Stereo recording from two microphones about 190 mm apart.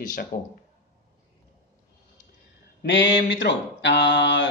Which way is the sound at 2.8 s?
75° left (ahead or behind).